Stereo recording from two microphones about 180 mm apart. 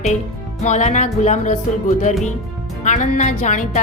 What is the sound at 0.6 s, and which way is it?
A woman's voice, 40° left (ahead or behind).